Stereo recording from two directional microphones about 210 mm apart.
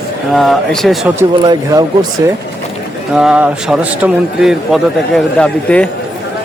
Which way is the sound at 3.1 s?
5° right (ahead or behind).